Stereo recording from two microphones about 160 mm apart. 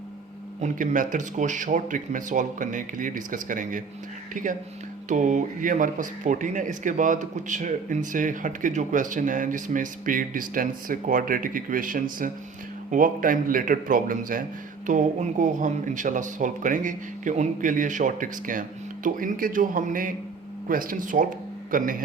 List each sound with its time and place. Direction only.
0.6 s speech: 55° right (ahead or behind)